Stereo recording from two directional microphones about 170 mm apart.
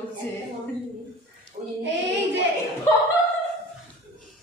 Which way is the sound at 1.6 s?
35° right (ahead or behind).